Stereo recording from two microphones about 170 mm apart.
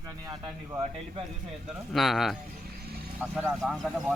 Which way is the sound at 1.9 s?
Centre (ahead or behind).